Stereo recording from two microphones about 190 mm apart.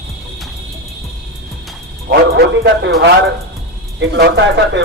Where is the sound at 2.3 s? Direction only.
60° right (ahead or behind).